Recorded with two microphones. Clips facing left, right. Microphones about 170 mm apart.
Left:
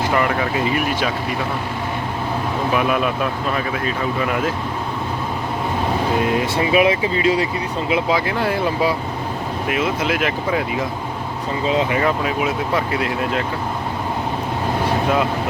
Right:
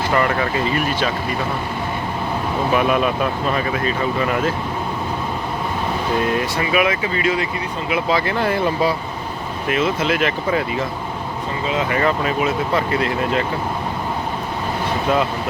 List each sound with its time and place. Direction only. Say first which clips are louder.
0.1 s speech: right 3 dB; 5° left (ahead or behind)
2.7 s speech: right 2 dB; centre (ahead or behind)
6.6 s speech: left 5 dB; 30° left (ahead or behind)
8.1 s speech: right 1 dB; 5° left (ahead or behind)
11.9 s speech: even; 5° left (ahead or behind)